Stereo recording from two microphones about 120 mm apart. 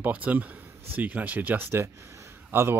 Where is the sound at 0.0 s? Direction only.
15° right (ahead or behind).